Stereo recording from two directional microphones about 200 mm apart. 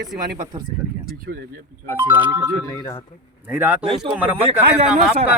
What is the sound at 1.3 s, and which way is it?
Speech, 55° right (ahead or behind).